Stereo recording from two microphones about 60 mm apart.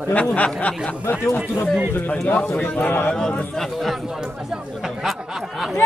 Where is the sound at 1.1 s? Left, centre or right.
Left.